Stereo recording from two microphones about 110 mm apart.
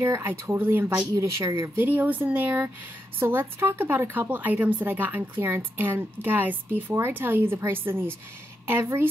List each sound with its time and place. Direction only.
0.0 s speech: 25° right (ahead or behind)
1.9 s speech: 15° right (ahead or behind)